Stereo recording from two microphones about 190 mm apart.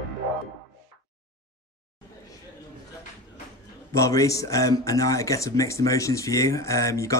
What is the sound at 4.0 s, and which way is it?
Speech, 15° left (ahead or behind).